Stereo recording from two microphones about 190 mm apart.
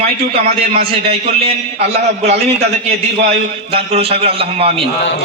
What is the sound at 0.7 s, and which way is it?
A man's voice, 30° right (ahead or behind).